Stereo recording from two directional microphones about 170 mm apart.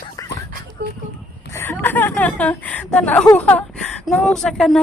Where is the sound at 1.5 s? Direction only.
15° left (ahead or behind).